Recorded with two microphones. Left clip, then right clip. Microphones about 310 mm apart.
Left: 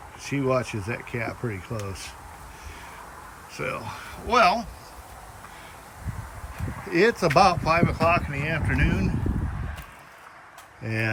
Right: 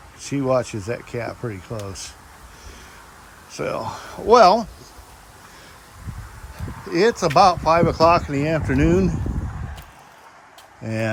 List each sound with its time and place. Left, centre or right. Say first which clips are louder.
0.2 s speech: right 4 dB; centre
3.5 s speech: right 6 dB; centre
6.9 s speech: right 3 dB; centre
10.8 s speech: right 3 dB; centre